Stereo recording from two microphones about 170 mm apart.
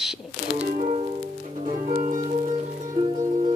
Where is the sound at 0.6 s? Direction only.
40° right (ahead or behind).